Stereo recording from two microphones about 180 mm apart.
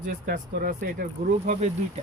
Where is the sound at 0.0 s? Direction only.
55° right (ahead or behind).